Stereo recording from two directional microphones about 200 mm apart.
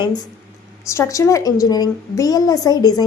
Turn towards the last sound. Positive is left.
turn(degrees=20)  # may be behind; listen again after turning